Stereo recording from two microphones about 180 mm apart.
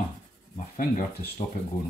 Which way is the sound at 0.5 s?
45° left (ahead or behind).